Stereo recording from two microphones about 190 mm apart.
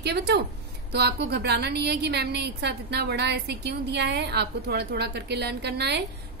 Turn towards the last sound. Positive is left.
turn(degrees=-60)  # may be behind; listen again after turning